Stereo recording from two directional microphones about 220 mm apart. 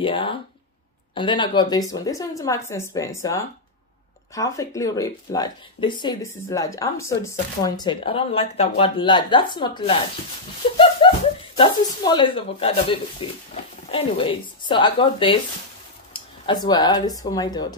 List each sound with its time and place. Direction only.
0.0 s speech: 25° left (ahead or behind)